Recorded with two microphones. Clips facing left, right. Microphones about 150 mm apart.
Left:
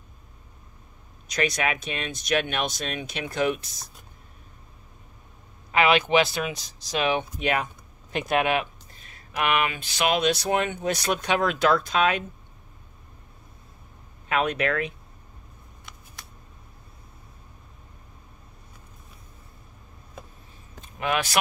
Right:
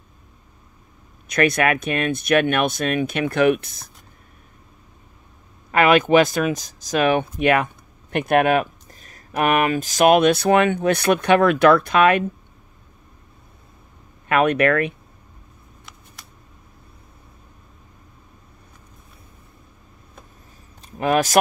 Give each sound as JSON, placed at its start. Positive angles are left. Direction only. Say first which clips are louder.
{"t": 1.3, "sound": "speech", "louder": "right 8 dB", "side_deg": -55}
{"t": 5.7, "sound": "speech", "louder": "right 6 dB", "side_deg": -50}
{"t": 14.3, "sound": "speech", "louder": "right 8 dB", "side_deg": -60}
{"t": 20.8, "sound": "speech", "louder": "right 7 dB", "side_deg": -40}